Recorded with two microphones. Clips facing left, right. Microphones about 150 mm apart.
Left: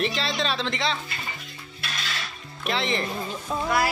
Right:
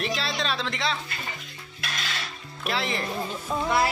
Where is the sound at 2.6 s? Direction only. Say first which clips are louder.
Left 2 dB; centre (ahead or behind).